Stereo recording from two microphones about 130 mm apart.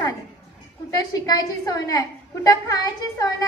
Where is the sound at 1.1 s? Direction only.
30° left (ahead or behind).